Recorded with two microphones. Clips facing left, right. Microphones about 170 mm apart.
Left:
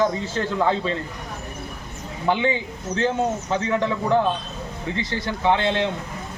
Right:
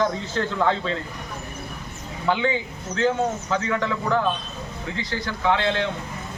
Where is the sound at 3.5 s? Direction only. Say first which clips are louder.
Left 2 dB; 20° left (ahead or behind).